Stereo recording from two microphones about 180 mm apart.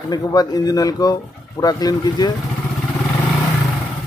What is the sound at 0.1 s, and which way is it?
Speech, 20° left (ahead or behind).